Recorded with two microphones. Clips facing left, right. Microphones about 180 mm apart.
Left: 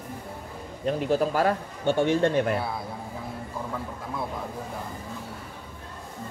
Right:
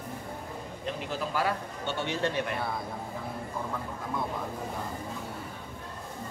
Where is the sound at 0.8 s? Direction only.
45° left (ahead or behind).